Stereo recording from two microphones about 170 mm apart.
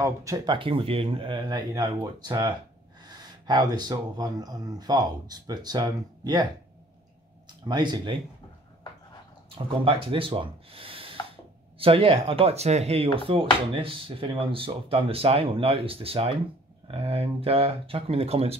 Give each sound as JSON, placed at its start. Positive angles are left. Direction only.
{"t": 0.0, "sound": "speech", "side_deg": -20}
{"t": 0.6, "sound": "speech", "side_deg": -30}
{"t": 7.6, "sound": "speech", "side_deg": -25}
{"t": 9.8, "sound": "speech", "side_deg": -30}